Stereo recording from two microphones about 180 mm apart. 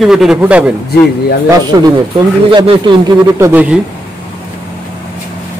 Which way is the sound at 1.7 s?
20° right (ahead or behind).